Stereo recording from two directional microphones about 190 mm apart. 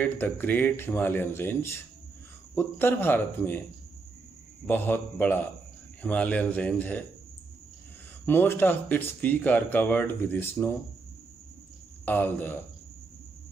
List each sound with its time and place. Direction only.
0.0 s speech: 10° left (ahead or behind)
4.6 s speech: 10° left (ahead or behind)
8.3 s speech: 10° left (ahead or behind)
12.0 s speech: 10° left (ahead or behind)